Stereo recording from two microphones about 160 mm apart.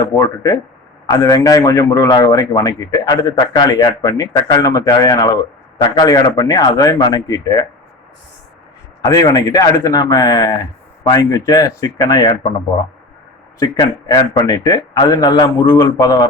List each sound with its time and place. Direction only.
0.0 s a man's voice: 20° left (ahead or behind)
9.0 s a man's voice: 20° left (ahead or behind)
13.6 s a man's voice: 25° left (ahead or behind)